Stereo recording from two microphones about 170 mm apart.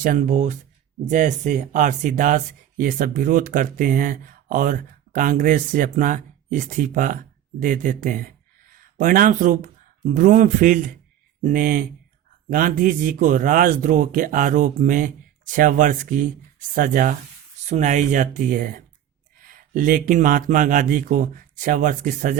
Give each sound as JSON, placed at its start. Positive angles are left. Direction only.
{"t": 0.0, "sound": "speech", "side_deg": -50}